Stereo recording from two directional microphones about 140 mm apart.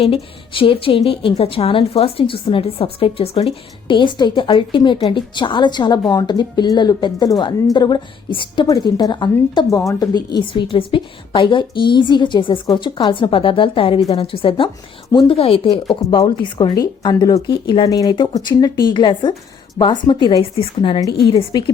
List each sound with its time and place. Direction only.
0.0 s a woman's voice: 40° left (ahead or behind)
16.2 s a woman's voice: 25° left (ahead or behind)